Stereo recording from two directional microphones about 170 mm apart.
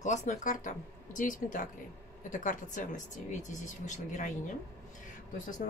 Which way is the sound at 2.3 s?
50° left (ahead or behind).